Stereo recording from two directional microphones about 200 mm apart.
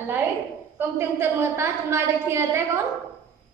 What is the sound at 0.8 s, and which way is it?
A woman's voice, 10° right (ahead or behind).